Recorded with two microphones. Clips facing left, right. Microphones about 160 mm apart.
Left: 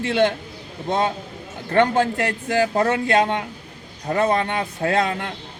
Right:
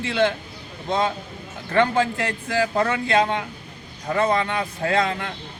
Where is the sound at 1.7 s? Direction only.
55° left (ahead or behind).